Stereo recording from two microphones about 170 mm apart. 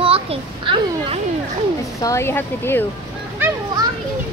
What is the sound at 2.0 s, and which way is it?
Speech, 15° left (ahead or behind).